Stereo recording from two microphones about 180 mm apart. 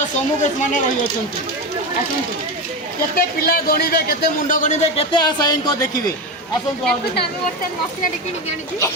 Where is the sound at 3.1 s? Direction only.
55° left (ahead or behind); by 5.2 s 35° left (ahead or behind).